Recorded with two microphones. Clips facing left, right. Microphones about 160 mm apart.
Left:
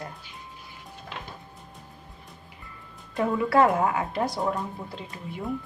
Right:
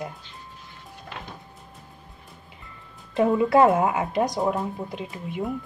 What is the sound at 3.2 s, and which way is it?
Speech, 20° right (ahead or behind).